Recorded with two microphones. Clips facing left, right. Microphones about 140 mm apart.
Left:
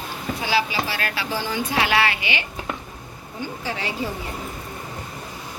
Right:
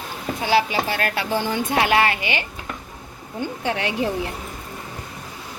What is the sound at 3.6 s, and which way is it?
Speech, 60° right (ahead or behind).